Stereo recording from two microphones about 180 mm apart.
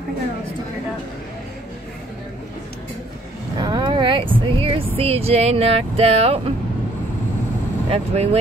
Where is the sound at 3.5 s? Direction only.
25° right (ahead or behind).